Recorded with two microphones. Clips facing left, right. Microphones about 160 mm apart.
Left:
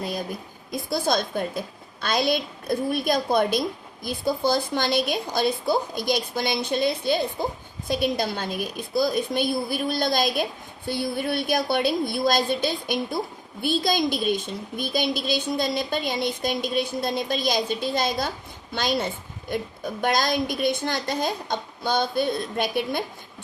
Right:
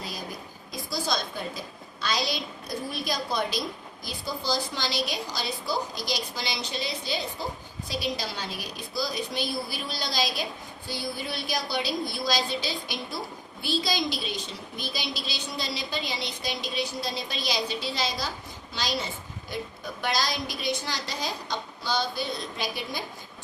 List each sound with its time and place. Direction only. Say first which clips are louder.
0.7 s a woman's voice: left 6 dB; 55° left (ahead or behind)